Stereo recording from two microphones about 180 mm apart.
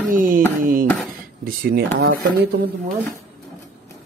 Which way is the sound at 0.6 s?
50° right (ahead or behind).